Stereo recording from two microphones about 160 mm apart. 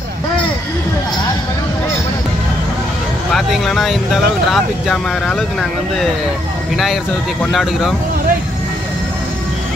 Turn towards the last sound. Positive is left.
turn(degrees=0)  # may be behind; listen again after turning